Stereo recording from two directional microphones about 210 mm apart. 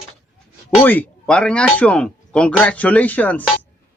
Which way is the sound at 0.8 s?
10° left (ahead or behind).